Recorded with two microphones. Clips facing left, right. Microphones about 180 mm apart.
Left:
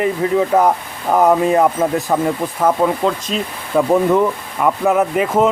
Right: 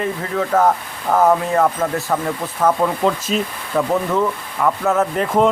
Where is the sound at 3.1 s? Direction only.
Centre (ahead or behind).